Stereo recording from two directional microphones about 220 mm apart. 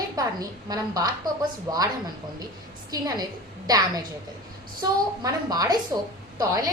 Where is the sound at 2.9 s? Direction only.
15° right (ahead or behind).